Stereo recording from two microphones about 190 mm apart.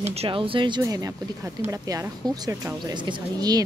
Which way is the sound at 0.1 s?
30° right (ahead or behind).